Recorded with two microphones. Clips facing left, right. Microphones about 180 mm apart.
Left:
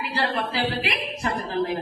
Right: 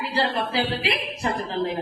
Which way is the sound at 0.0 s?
25° right (ahead or behind).